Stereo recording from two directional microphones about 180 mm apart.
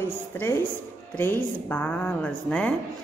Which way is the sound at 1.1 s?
10° left (ahead or behind).